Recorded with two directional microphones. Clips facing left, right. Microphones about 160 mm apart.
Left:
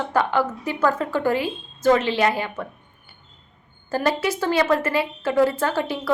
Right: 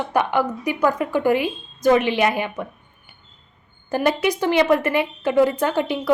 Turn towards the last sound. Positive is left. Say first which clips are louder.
# right 2 dB
turn(degrees=-20)  # may be behind; listen again after turning